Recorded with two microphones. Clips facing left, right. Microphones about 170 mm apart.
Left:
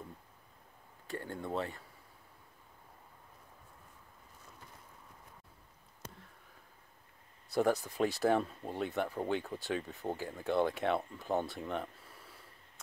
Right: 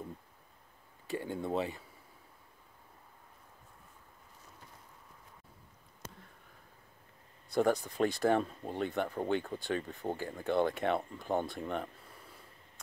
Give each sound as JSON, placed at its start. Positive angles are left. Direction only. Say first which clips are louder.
{"t": 1.1, "sound": "speech", "louder": "right 4 dB", "side_deg": -5}
{"t": 1.5, "sound": "speech", "louder": "right 2 dB", "side_deg": -15}
{"t": 7.4, "sound": "speech", "louder": "right 1 dB", "side_deg": 5}